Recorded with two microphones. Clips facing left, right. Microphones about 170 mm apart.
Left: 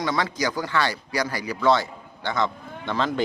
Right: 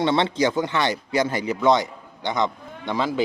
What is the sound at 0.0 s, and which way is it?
A man's voice, 25° right (ahead or behind).